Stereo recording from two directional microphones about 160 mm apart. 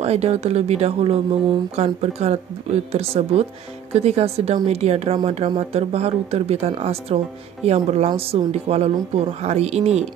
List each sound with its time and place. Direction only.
0.0 s speech: 40° right (ahead or behind)